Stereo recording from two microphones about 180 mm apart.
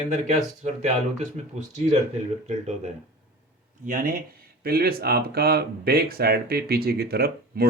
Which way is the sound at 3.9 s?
50° right (ahead or behind).